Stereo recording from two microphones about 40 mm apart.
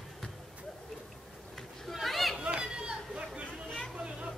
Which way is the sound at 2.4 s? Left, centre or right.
Right.